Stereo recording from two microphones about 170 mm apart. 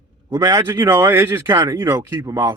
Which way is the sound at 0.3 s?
20° right (ahead or behind).